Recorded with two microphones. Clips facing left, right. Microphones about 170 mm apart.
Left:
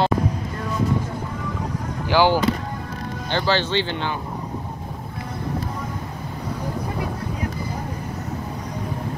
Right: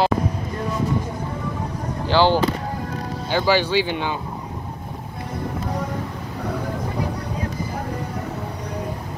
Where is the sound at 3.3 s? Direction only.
10° right (ahead or behind).